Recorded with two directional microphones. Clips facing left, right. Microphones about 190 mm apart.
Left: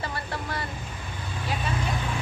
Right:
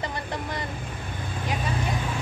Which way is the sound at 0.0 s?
20° right (ahead or behind).